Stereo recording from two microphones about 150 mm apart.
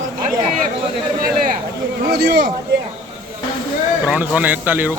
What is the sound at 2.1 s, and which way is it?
Speech, 90° right.